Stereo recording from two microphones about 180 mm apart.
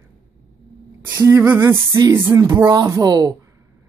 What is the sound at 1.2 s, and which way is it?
Speech, 15° right (ahead or behind).